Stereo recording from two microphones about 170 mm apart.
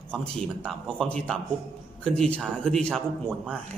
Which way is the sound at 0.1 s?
5° left (ahead or behind).